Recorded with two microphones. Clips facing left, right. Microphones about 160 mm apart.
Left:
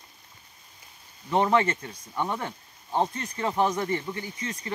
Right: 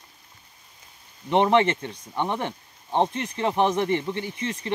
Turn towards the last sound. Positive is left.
turn(degrees=-25)  # may be behind; listen again after turning